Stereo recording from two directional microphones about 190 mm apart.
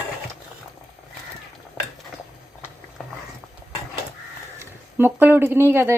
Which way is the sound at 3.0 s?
Centre (ahead or behind).